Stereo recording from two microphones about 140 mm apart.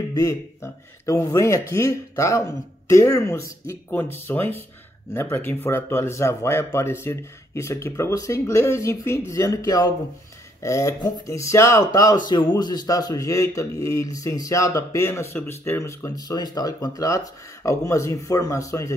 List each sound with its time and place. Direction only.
0.1 s a man's voice: 25° left (ahead or behind)